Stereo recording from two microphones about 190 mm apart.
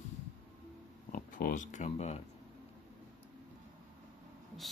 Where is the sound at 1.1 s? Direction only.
45° left (ahead or behind).